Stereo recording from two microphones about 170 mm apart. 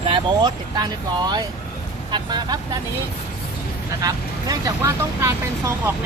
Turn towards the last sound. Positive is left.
turn(degrees=-15)  # may be behind; listen again after turning